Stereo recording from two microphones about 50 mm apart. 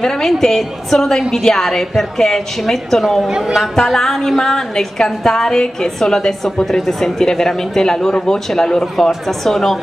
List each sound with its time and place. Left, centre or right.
0.0 s a woman's voice: centre
3.3 s speech: centre
3.8 s a woman's voice: centre